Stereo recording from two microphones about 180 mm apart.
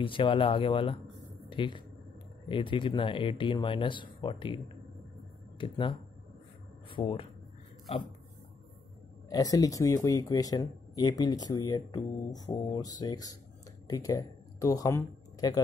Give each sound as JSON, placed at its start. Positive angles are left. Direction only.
{"t": 0.0, "sound": "speech", "side_deg": 30}
{"t": 5.6, "sound": "speech", "side_deg": 30}
{"t": 9.3, "sound": "speech", "side_deg": 20}